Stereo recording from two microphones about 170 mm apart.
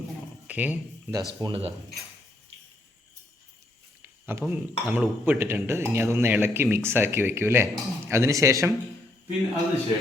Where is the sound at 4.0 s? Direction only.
15° right (ahead or behind).